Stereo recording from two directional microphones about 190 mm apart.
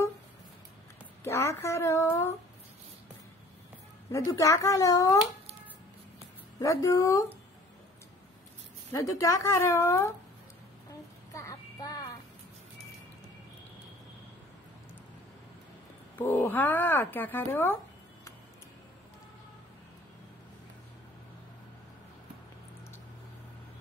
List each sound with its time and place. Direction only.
1.2 s speech: 15° left (ahead or behind)
4.1 s speech: 15° left (ahead or behind)
6.6 s speech: 15° left (ahead or behind)
8.9 s speech: 15° left (ahead or behind)
11.3 s child singing: 15° left (ahead or behind)
16.2 s speech: 10° left (ahead or behind)